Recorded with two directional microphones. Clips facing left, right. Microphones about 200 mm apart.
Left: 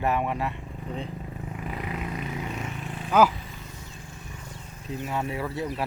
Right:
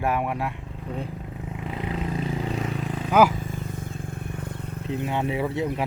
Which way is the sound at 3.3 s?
50° right (ahead or behind).